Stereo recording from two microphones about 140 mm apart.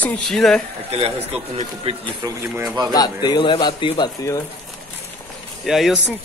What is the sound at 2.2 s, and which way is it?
Speech, 25° right (ahead or behind).